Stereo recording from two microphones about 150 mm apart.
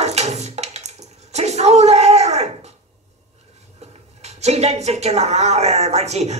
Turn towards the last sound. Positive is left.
turn(degrees=-45)  # may be behind; listen again after turning